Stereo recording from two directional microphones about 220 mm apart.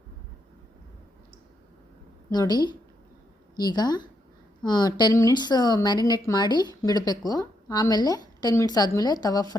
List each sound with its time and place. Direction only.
2.3 s a woman's voice: 20° left (ahead or behind)